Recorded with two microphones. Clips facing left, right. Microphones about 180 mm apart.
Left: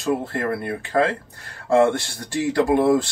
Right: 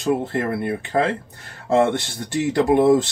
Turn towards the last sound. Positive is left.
turn(degrees=-20)  # may be behind; listen again after turning